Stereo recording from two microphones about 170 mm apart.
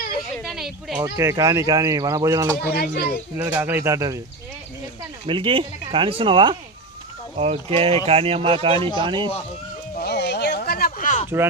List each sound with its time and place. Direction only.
0.4 s a sound: centre (ahead or behind)
1.0 s speech: 15° right (ahead or behind)
2.7 s speech: 65° left (ahead or behind)
3.3 s speech: 20° right (ahead or behind)
5.2 s speech: 30° right (ahead or behind)
10.0 s a sound: 80° left; by 11.3 s 45° left (ahead or behind)